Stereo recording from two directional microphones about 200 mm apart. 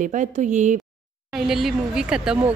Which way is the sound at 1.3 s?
Centre (ahead or behind).